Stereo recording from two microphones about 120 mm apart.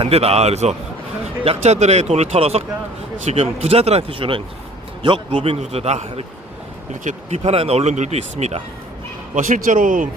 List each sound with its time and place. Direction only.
0.0 s speech: 55° right (ahead or behind)
7.0 s speech: 75° right (ahead or behind)
9.3 s speech: 90° right